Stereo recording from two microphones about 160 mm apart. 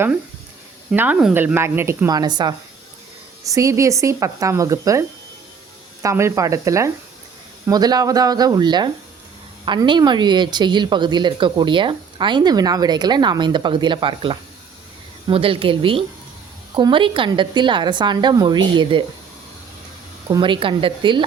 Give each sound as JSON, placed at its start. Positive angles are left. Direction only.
{"t": 0.9, "sound": "a woman's voice", "side_deg": -10}
{"t": 20.3, "sound": "speech", "side_deg": -30}